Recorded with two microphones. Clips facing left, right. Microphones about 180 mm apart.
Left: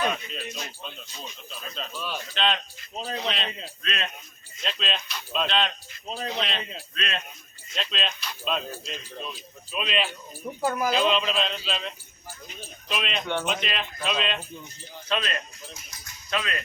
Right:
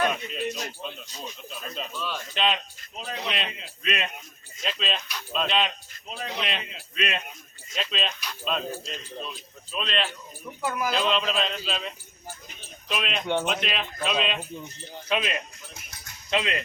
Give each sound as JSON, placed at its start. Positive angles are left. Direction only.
{"t": 0.1, "sound": "speech", "side_deg": -5}
{"t": 1.9, "sound": "speech", "side_deg": 15}
{"t": 2.3, "sound": "a man's voice", "side_deg": -5}
{"t": 2.9, "sound": "speech", "side_deg": 35}
{"t": 3.2, "sound": "a man's voice", "side_deg": -10}
{"t": 6.1, "sound": "speech", "side_deg": 35}
{"t": 6.4, "sound": "a man's voice", "side_deg": -10}
{"t": 10.4, "sound": "speech", "side_deg": 30}
{"t": 10.8, "sound": "speech", "side_deg": 0}
{"t": 15.1, "sound": "a man's voice", "side_deg": -15}